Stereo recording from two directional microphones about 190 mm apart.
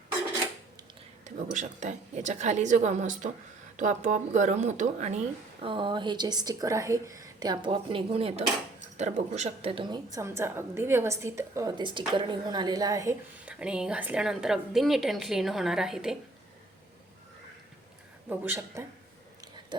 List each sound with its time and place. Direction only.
1.5 s a woman's voice: 40° right (ahead or behind); by 16.1 s 5° right (ahead or behind)
18.3 s a woman's voice: 10° right (ahead or behind)